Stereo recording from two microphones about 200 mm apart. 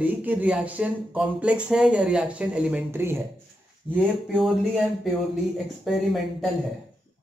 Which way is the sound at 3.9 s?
5° right (ahead or behind).